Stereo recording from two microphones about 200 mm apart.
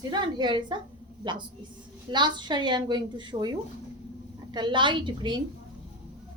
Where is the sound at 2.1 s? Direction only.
20° right (ahead or behind).